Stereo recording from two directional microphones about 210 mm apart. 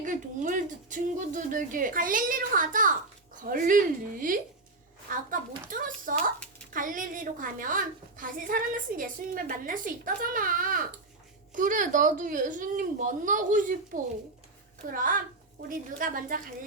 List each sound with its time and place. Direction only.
0.0 s a woman's voice: 40° right (ahead or behind)